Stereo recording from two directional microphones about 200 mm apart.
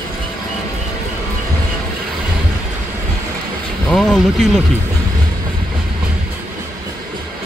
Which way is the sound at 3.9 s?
Centre (ahead or behind).